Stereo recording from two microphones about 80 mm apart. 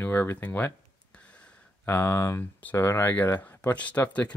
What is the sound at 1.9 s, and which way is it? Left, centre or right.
Speech, left.